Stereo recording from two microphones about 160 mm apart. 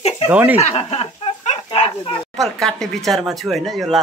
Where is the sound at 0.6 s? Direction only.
40° left (ahead or behind).